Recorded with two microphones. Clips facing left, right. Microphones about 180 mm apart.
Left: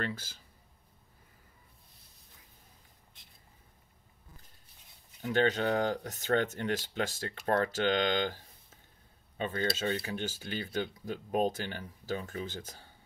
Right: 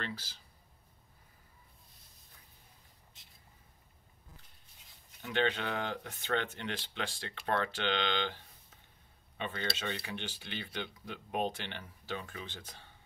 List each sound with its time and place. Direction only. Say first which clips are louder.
0.0 s speech: left 5 dB; 50° left (ahead or behind)
5.2 s speech: left 5 dB; 40° left (ahead or behind)